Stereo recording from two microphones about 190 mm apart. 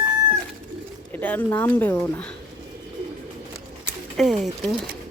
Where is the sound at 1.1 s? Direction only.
10° left (ahead or behind).